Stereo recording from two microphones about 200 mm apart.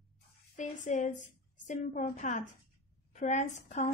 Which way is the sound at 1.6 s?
40° left (ahead or behind).